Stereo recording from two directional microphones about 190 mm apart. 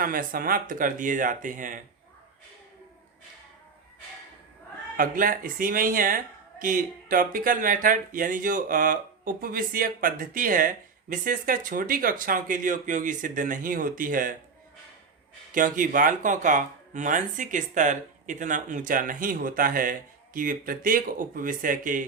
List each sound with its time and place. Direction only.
0.0 s speech: 45° right (ahead or behind)
4.9 s speech: 45° right (ahead or behind)
15.5 s speech: 45° right (ahead or behind)